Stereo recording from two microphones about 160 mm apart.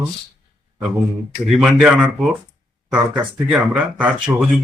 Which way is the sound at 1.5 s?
5° right (ahead or behind).